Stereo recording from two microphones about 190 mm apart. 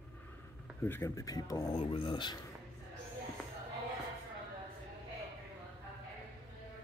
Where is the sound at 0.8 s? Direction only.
15° left (ahead or behind).